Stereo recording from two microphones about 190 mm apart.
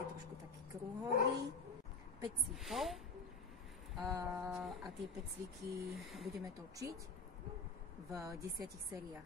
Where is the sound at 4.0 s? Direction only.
20° right (ahead or behind).